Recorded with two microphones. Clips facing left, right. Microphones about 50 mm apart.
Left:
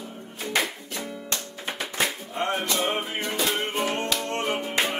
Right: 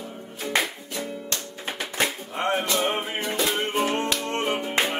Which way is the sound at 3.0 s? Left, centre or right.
Right.